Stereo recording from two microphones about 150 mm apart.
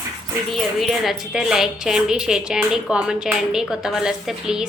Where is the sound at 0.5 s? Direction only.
Centre (ahead or behind).